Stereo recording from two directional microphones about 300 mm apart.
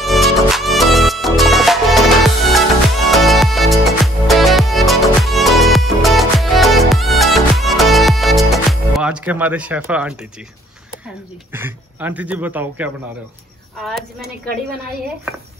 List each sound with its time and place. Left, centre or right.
0.0 s music: centre
11.5 s speech: centre